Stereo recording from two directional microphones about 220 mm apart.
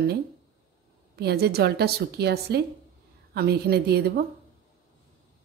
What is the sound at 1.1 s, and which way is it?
A woman's voice, 45° right (ahead or behind).